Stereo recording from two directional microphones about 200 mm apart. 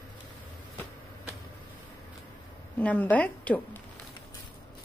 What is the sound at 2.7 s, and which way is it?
A woman's voice, 5° left (ahead or behind).